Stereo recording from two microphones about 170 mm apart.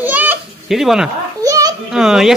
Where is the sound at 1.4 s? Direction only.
20° right (ahead or behind).